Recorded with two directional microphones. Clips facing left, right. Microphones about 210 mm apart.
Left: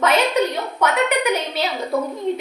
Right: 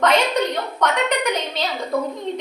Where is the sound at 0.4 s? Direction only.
5° left (ahead or behind).